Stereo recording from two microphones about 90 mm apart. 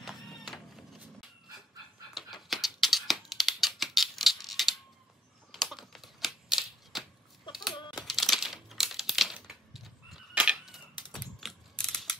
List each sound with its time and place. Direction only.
2.1 s a sound: centre (ahead or behind)
5.5 s typing: centre (ahead or behind)
7.7 s typing: 60° left (ahead or behind)
8.0 s crumpling: centre (ahead or behind)
10.5 s a sound: 5° right (ahead or behind)
11.7 s mechanisms: 10° left (ahead or behind)